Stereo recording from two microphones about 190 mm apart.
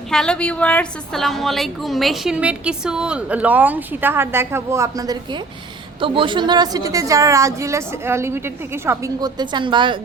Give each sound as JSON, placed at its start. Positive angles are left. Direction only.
{"t": 0.1, "sound": "a woman's voice", "side_deg": 5}